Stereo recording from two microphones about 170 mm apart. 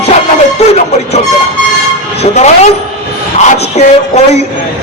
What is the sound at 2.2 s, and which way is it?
Speech, 40° left (ahead or behind).